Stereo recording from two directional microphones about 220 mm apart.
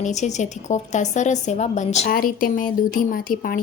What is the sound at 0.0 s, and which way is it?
A woman's voice, 30° left (ahead or behind).